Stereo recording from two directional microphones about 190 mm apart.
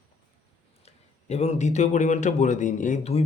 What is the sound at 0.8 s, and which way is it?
A man's voice, 35° left (ahead or behind).